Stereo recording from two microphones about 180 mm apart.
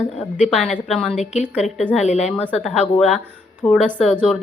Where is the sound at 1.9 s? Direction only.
40° left (ahead or behind).